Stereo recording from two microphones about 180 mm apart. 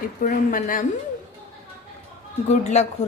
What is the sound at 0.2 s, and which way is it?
Speech, 50° left (ahead or behind).